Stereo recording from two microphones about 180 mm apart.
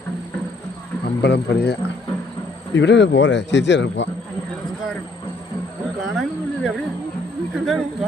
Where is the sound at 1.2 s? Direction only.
65° left (ahead or behind).